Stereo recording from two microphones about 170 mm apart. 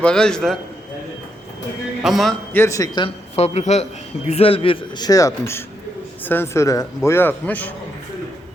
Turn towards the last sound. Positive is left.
turn(degrees=10)  # may be behind; listen again after turning